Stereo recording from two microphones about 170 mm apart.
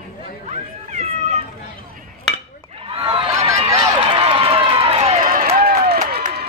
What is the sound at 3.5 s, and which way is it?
Run, 40° right (ahead or behind).